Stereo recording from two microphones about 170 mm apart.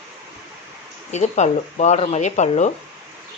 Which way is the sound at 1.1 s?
40° left (ahead or behind).